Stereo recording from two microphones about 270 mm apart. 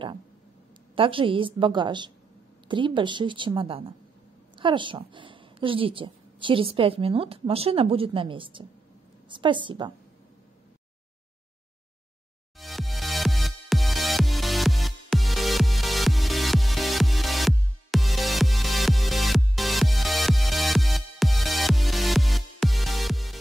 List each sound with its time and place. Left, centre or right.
0.9 s a woman's voice: centre
12.5 s music: centre